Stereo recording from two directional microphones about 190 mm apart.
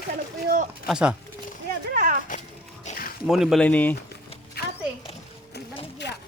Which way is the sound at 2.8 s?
45° left (ahead or behind).